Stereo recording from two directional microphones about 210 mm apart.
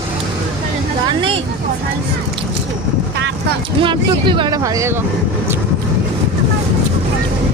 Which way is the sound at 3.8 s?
25° right (ahead or behind).